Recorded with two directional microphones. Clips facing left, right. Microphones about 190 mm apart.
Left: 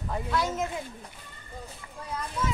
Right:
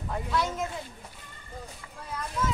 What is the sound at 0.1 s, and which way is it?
Speech, centre (ahead or behind).